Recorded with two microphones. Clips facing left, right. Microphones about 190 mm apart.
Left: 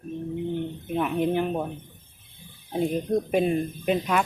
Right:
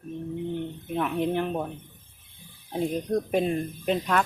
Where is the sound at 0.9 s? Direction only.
5° left (ahead or behind).